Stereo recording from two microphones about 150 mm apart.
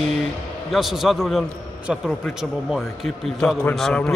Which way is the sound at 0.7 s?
Centre (ahead or behind).